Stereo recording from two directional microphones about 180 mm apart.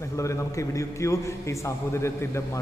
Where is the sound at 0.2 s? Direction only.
15° left (ahead or behind).